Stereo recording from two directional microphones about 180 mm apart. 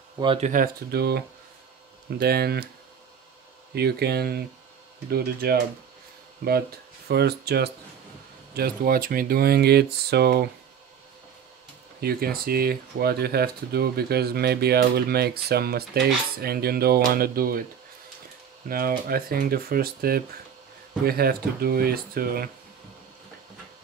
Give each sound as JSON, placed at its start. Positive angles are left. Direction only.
{"t": 0.4, "sound": "speech", "side_deg": -50}
{"t": 3.7, "sound": "speech", "side_deg": -65}
{"t": 7.1, "sound": "speech", "side_deg": -60}
{"t": 12.0, "sound": "speech", "side_deg": -60}
{"t": 18.7, "sound": "speech", "side_deg": -55}